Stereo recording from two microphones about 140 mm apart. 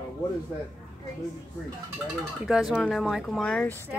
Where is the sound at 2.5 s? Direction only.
5° right (ahead or behind).